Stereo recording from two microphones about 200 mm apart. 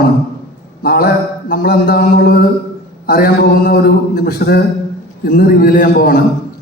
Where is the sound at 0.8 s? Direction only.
50° left (ahead or behind).